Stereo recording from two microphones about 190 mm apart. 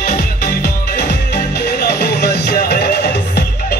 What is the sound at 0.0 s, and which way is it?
Music, 55° left (ahead or behind).